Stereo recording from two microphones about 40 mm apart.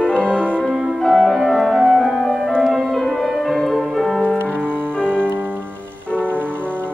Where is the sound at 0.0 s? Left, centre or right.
Left.